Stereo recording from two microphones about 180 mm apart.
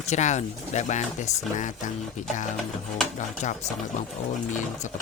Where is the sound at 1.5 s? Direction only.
45° left (ahead or behind).